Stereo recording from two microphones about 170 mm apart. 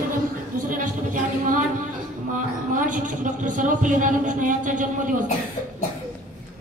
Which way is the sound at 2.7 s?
50° right (ahead or behind).